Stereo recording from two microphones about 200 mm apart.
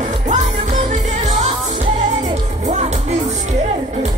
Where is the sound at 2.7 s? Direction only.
35° right (ahead or behind).